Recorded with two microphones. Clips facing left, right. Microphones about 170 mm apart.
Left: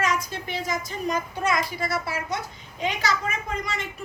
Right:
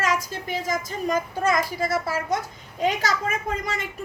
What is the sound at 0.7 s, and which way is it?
A woman's voice, 45° right (ahead or behind).